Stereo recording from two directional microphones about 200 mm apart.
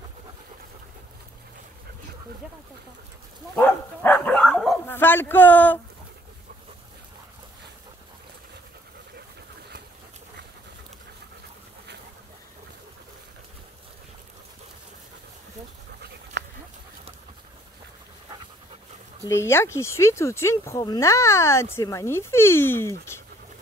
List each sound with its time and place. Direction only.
3.5 s speech: 10° left (ahead or behind)
16.4 s a sound: 60° right (ahead or behind)
19.2 s speech: 15° left (ahead or behind)